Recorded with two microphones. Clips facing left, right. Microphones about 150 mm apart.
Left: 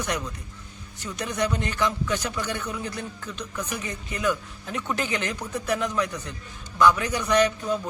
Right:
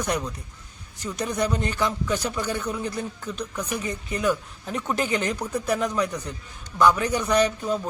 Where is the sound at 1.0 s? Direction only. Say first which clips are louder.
Right 2 dB; 35° right (ahead or behind).